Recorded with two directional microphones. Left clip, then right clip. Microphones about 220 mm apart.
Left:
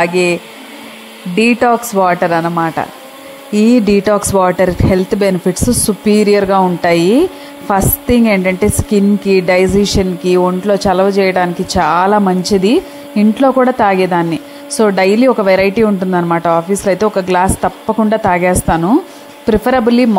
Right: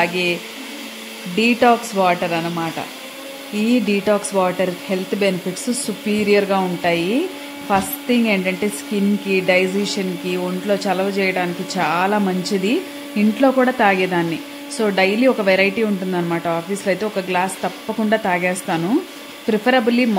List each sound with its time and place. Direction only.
0.0 s speech: 25° left (ahead or behind)